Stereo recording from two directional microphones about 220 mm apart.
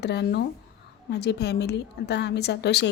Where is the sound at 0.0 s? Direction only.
50° left (ahead or behind).